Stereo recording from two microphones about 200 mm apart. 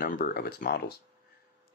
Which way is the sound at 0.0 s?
50° left (ahead or behind).